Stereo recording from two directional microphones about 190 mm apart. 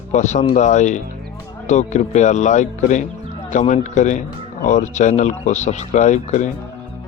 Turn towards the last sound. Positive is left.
turn(degrees=40)  # may be behind; listen again after turning